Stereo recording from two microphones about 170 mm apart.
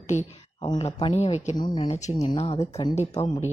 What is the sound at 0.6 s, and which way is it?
Speech, 30° left (ahead or behind).